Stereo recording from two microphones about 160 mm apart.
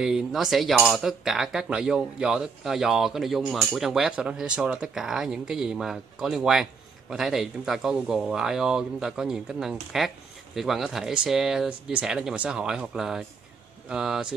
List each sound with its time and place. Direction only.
0.0 s cutlery: 5° right (ahead or behind)